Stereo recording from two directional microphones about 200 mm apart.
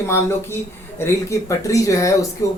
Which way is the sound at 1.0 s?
15° left (ahead or behind).